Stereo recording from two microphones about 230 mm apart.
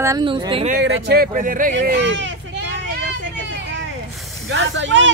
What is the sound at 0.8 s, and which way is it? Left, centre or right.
Speech, right.